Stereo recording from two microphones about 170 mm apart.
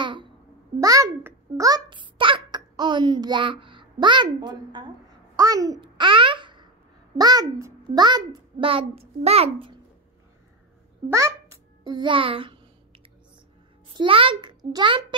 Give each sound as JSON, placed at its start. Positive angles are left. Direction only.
{"t": 0.0, "sound": "babbling", "side_deg": -30}
{"t": 0.7, "sound": "a child's voice", "side_deg": -20}
{"t": 5.3, "sound": "babbling", "side_deg": -20}
{"t": 7.2, "sound": "a child's voice", "side_deg": -25}
{"t": 11.1, "sound": "a child's voice", "side_deg": -15}
{"t": 13.9, "sound": "a child's voice", "side_deg": -30}